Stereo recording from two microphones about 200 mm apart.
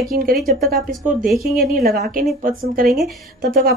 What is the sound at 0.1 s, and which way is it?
A woman's voice, 45° right (ahead or behind).